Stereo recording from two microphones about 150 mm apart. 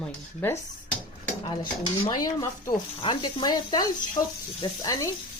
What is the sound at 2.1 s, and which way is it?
Speech, 25° left (ahead or behind).